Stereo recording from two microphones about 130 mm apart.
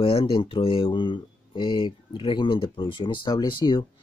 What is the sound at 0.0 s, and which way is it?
Speech, 45° left (ahead or behind).